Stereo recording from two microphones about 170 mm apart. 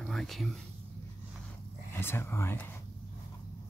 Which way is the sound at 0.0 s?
Centre (ahead or behind).